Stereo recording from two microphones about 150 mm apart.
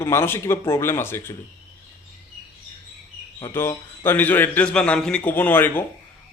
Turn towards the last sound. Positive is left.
turn(degrees=15)  # may be behind; listen again after turning